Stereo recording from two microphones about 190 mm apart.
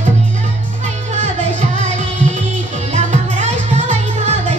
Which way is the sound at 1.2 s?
40° right (ahead or behind).